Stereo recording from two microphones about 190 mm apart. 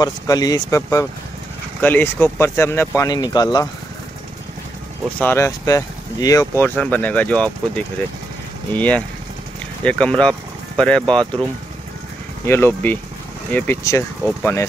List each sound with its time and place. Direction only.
0.0 s speech: 20° left (ahead or behind)
5.2 s speech: 15° left (ahead or behind)
12.4 s speech: 10° left (ahead or behind)